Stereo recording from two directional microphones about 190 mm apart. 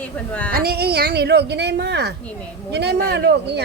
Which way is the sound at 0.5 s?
55° right (ahead or behind).